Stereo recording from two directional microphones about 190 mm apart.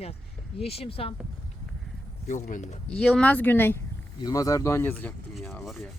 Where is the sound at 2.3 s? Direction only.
40° left (ahead or behind).